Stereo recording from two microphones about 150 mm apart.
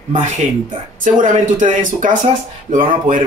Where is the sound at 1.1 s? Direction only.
60° right (ahead or behind).